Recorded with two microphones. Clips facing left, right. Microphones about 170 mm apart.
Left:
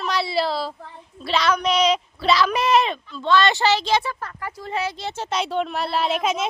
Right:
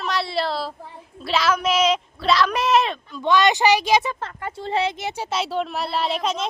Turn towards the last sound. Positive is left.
turn(degrees=5)  # may be behind; listen again after turning